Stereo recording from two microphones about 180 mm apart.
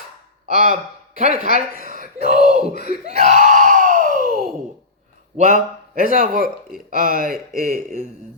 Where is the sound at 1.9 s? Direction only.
45° right (ahead or behind).